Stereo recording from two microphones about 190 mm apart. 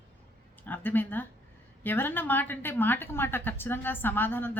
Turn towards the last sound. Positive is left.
turn(degrees=10)  # may be behind; listen again after turning